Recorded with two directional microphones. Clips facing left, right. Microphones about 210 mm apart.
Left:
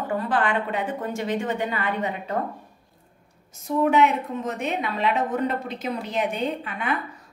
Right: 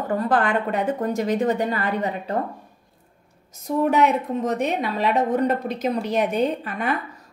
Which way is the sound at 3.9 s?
40° right (ahead or behind).